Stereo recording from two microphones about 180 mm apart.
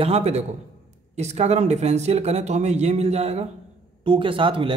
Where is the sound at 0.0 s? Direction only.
35° right (ahead or behind).